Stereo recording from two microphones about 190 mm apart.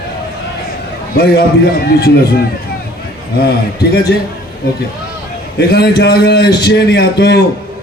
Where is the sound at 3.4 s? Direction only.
60° left (ahead or behind).